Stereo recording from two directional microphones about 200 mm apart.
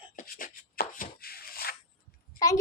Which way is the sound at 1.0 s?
50° left (ahead or behind).